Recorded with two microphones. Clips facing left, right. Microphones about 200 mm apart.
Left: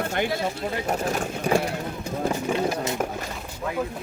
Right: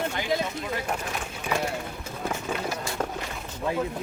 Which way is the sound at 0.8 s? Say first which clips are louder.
Left 6 dB; 40° left (ahead or behind).